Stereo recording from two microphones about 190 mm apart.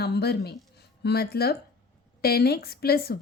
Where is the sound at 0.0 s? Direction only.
60° left (ahead or behind).